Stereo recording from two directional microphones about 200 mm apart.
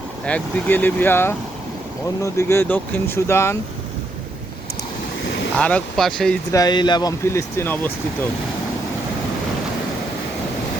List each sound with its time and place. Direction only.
0.3 s speech: 10° left (ahead or behind)
5.5 s speech: 5° left (ahead or behind)
6.5 s speech: 20° left (ahead or behind)